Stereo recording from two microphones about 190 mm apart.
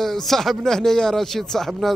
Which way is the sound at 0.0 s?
Centre (ahead or behind).